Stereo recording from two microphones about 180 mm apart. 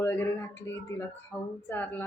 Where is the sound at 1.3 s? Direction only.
10° left (ahead or behind).